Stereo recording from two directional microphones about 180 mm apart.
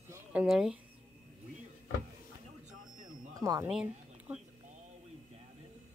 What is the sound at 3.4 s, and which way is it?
Speech, 15° right (ahead or behind).